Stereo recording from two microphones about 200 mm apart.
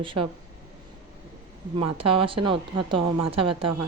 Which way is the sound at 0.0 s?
25° right (ahead or behind).